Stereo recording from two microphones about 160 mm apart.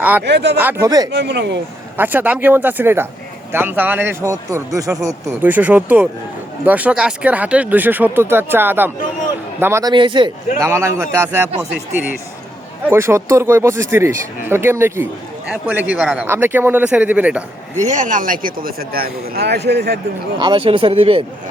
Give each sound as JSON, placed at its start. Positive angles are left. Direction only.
{"t": 0.3, "sound": "speech", "side_deg": -90}
{"t": 0.5, "sound": "speech", "side_deg": -10}
{"t": 0.9, "sound": "speech", "side_deg": -25}
{"t": 1.1, "sound": "speech", "side_deg": -90}
{"t": 2.0, "sound": "speech", "side_deg": -10}
{"t": 9.9, "sound": "speech", "side_deg": -30}
{"t": 10.6, "sound": "speech", "side_deg": -15}
{"t": 12.9, "sound": "speech", "side_deg": -15}
{"t": 17.7, "sound": "speech", "side_deg": -50}
{"t": 20.4, "sound": "speech", "side_deg": -30}